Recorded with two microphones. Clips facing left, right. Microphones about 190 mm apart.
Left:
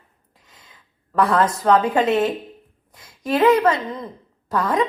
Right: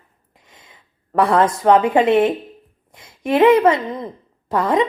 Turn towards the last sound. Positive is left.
turn(degrees=-25)  # may be behind; listen again after turning